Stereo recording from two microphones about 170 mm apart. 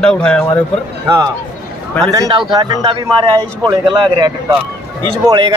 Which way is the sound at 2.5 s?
25° right (ahead or behind).